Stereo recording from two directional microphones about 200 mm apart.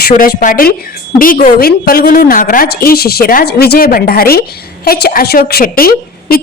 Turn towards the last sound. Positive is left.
turn(degrees=50)  # may be behind; listen again after turning